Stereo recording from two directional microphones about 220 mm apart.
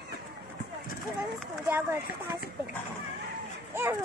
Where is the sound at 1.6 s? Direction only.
10° right (ahead or behind).